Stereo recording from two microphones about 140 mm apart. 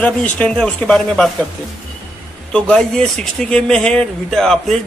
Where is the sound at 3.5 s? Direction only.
5° left (ahead or behind).